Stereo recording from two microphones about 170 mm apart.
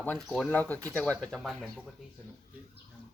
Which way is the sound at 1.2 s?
Centre (ahead or behind).